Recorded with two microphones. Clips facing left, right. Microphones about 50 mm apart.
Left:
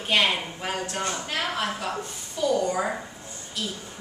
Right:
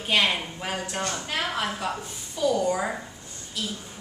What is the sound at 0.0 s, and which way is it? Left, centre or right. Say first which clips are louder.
A woman's voice: left 1 dB; centre.